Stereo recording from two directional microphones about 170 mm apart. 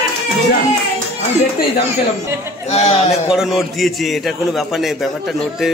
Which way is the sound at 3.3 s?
Centre (ahead or behind).